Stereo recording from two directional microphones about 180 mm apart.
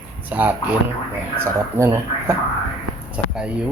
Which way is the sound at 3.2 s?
5° right (ahead or behind).